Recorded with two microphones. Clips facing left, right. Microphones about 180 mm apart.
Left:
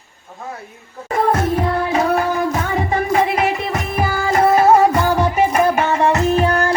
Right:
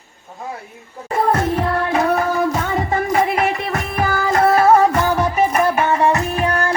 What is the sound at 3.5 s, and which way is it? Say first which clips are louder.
Music: left 1 dB; centre (ahead or behind).